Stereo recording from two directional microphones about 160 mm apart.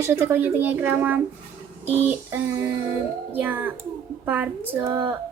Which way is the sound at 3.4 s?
10° right (ahead or behind).